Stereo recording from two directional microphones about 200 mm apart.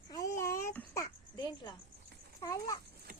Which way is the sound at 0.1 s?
15° left (ahead or behind).